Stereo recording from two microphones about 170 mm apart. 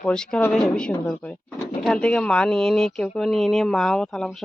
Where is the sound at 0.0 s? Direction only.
5° left (ahead or behind).